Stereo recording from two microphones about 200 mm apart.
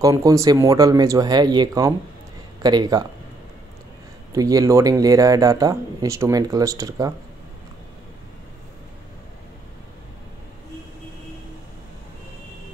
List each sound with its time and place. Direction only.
0.0 s speech: 15° right (ahead or behind)
4.3 s speech: 15° right (ahead or behind)